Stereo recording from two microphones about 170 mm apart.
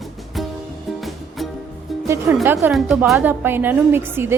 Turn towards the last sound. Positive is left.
turn(degrees=-15)  # may be behind; listen again after turning